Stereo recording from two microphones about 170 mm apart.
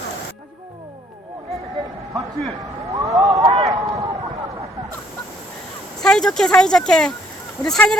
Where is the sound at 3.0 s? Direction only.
20° right (ahead or behind).